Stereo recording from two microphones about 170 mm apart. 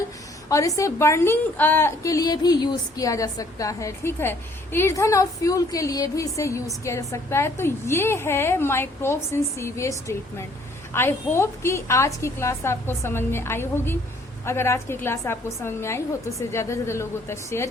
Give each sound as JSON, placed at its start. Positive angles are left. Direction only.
{"t": 0.4, "sound": "a woman's voice", "side_deg": 20}